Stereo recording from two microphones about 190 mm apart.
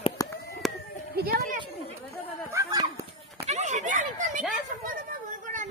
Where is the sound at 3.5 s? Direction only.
40° right (ahead or behind).